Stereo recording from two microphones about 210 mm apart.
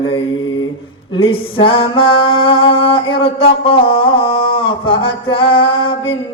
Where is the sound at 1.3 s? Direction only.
25° left (ahead or behind).